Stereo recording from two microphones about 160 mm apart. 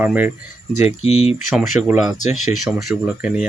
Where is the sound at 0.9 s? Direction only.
40° left (ahead or behind).